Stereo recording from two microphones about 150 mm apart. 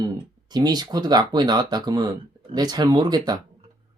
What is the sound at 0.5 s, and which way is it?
Speech, 25° right (ahead or behind).